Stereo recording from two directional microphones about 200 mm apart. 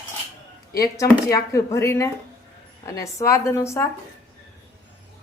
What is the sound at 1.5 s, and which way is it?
Speech, 15° left (ahead or behind).